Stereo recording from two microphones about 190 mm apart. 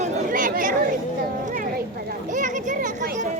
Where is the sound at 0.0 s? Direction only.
45° right (ahead or behind).